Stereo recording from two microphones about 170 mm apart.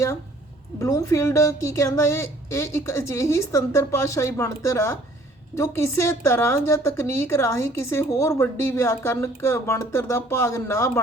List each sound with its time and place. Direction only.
0.8 s a woman's voice: 15° left (ahead or behind)